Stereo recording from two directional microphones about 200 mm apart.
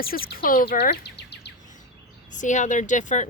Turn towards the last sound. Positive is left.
turn(degrees=40)  # may be behind; listen again after turning